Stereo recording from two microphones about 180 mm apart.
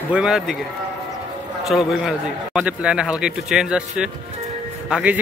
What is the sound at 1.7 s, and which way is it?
A man's voice, centre (ahead or behind).